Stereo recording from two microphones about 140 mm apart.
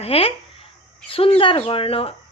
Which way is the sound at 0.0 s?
45° left (ahead or behind).